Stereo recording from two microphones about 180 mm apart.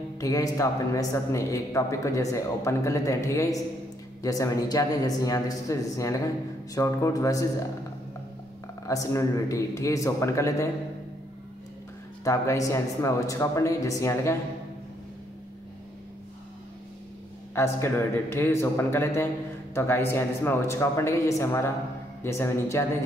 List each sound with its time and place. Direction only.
0.2 s a man's voice: 20° left (ahead or behind)
8.8 s speech: 15° left (ahead or behind)
12.3 s speech: 15° left (ahead or behind)
17.6 s speech: 15° left (ahead or behind)